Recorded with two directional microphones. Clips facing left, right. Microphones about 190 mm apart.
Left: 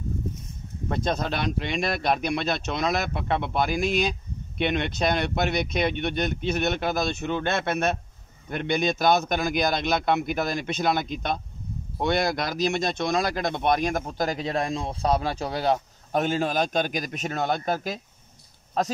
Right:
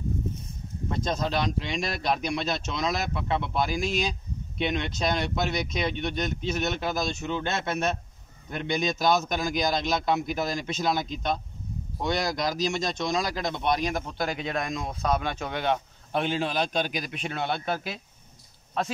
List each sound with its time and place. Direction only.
0.8 s a man's voice: 60° left (ahead or behind); by 18.9 s 40° left (ahead or behind)